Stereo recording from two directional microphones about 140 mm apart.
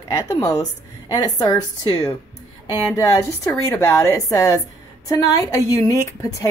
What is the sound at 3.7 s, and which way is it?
A woman's voice, 20° left (ahead or behind).